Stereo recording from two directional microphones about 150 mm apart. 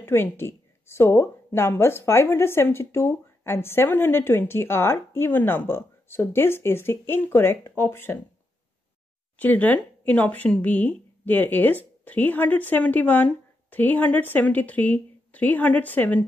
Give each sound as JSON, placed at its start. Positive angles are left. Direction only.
{"t": 0.0, "sound": "a woman's voice", "side_deg": 15}
{"t": 9.4, "sound": "a woman's voice", "side_deg": 10}